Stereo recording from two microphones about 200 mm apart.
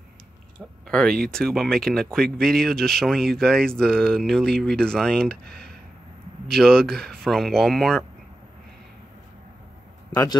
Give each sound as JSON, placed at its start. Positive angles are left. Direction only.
{"t": 0.8, "sound": "speech", "side_deg": 5}
{"t": 5.3, "sound": "speech", "side_deg": -55}
{"t": 6.5, "sound": "speech", "side_deg": 5}
{"t": 10.1, "sound": "a man's voice", "side_deg": 20}